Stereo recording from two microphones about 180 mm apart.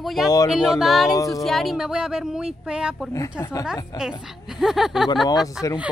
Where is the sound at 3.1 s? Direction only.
15° left (ahead or behind).